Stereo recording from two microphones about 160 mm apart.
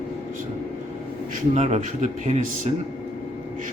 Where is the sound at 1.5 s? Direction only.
45° right (ahead or behind).